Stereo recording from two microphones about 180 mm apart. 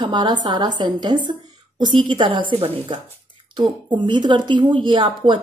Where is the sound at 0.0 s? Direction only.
25° right (ahead or behind).